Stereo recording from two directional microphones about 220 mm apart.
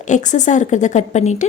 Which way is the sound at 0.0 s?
35° left (ahead or behind).